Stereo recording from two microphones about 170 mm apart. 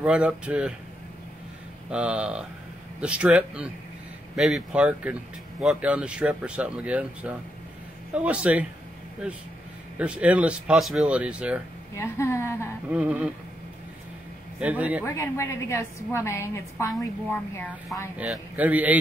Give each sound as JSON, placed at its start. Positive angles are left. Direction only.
{"t": 0.0, "sound": "speech", "side_deg": -5}
{"t": 1.9, "sound": "speech", "side_deg": -5}
{"t": 9.9, "sound": "speech", "side_deg": -5}
{"t": 12.0, "sound": "a woman's voice", "side_deg": 15}
{"t": 12.9, "sound": "speech", "side_deg": -10}
{"t": 14.6, "sound": "speech", "side_deg": -10}
{"t": 15.0, "sound": "a woman's voice", "side_deg": 15}
{"t": 18.1, "sound": "speech", "side_deg": -5}